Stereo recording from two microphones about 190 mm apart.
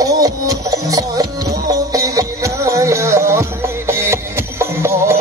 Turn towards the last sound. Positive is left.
turn(degrees=-15)  # may be behind; listen again after turning